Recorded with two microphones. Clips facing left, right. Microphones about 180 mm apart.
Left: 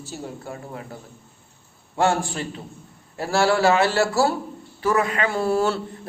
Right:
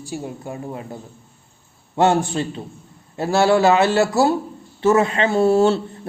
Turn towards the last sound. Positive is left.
turn(degrees=-25)  # may be behind; listen again after turning